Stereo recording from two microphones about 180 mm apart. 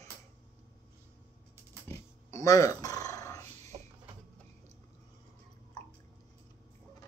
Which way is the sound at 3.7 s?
25° right (ahead or behind).